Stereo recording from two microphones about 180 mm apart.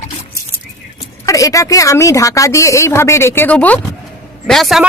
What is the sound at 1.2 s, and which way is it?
Speech, 20° left (ahead or behind).